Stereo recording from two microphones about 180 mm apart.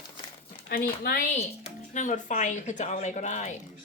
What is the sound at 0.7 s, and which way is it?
A woman's voice, 55° left (ahead or behind).